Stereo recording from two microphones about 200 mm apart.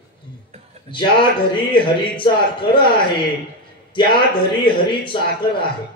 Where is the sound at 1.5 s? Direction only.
25° left (ahead or behind).